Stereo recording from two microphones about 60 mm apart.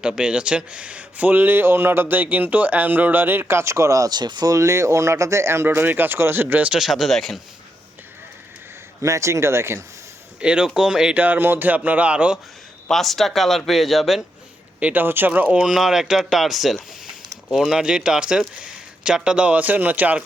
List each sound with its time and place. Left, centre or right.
0.2 s speech: centre; by 4.6 s right
4.6 s speech: right
5.6 s speech: right
6.7 s speech: centre
9.0 s speech: right
10.4 s speech: centre
11.1 s speech: right
12.9 s speech: centre
14.8 s speech: right
15.0 s speech: right
15.4 s speech: centre
15.7 s speech: centre; by 20.2 s right